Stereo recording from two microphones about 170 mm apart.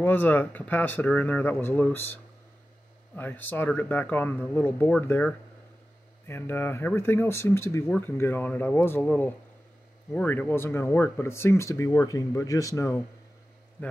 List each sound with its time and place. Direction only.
0.0 s speech: 10° left (ahead or behind)
3.2 s speech: 10° left (ahead or behind)